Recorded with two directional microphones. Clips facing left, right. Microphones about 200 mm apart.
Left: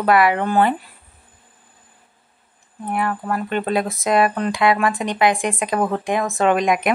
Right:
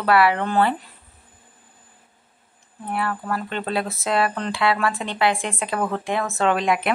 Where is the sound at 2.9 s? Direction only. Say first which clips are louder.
Left 3 dB; 15° left (ahead or behind).